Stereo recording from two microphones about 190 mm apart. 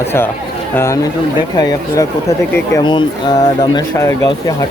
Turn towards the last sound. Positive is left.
turn(degrees=20)  # may be behind; listen again after turning